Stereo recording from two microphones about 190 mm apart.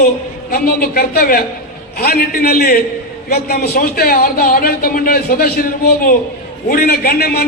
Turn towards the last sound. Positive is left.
turn(degrees=55)  # may be behind; listen again after turning